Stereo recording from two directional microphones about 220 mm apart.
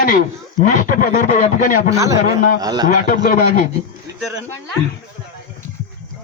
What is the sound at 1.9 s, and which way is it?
Speech, 15° right (ahead or behind).